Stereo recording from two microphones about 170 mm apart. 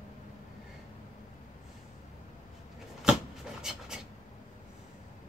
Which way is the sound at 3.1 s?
5° right (ahead or behind).